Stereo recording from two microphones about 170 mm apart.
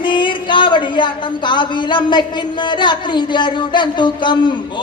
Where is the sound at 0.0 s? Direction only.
30° left (ahead or behind).